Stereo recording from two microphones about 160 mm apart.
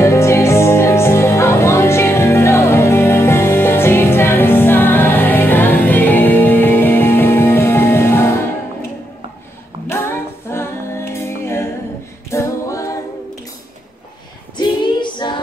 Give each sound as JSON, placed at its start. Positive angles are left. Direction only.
{"t": 0.0, "sound": "music", "side_deg": 15}
{"t": 9.8, "sound": "a capella", "side_deg": 15}
{"t": 14.6, "sound": "female singing", "side_deg": 30}